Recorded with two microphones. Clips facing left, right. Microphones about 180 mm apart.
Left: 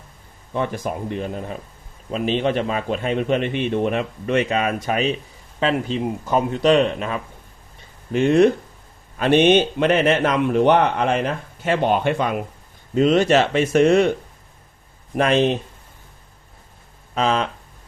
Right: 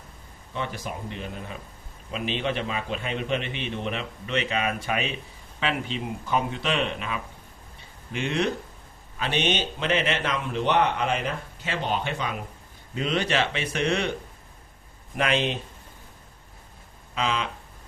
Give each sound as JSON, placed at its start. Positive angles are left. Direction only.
{"t": 0.5, "sound": "a man's voice", "side_deg": 50}
{"t": 17.2, "sound": "speech", "side_deg": 40}